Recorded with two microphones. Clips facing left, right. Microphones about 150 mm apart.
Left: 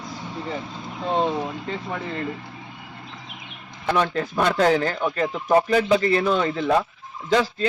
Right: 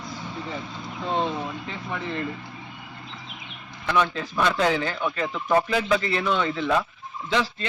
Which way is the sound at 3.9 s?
45° left (ahead or behind).